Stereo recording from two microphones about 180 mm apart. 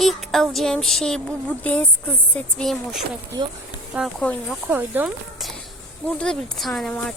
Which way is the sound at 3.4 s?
25° right (ahead or behind).